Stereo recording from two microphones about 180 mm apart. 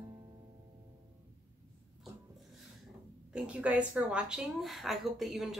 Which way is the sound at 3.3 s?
5° right (ahead or behind).